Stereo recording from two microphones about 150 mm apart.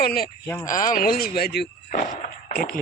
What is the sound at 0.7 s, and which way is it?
Speech, 65° left (ahead or behind).